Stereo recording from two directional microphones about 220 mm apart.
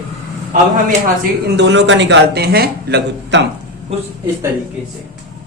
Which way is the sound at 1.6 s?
55° right (ahead or behind).